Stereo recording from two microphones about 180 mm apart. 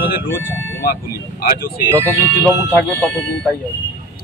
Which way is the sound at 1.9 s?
15° right (ahead or behind).